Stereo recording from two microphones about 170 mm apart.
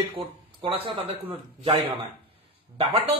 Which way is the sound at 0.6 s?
35° right (ahead or behind).